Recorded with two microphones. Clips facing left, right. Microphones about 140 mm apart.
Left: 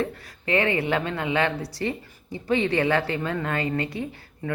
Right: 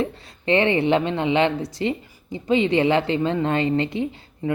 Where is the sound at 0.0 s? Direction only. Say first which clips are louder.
Right 3 dB; 25° right (ahead or behind).